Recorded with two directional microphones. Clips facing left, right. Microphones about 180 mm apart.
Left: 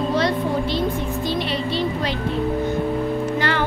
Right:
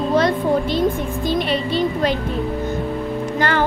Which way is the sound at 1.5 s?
50° right (ahead or behind).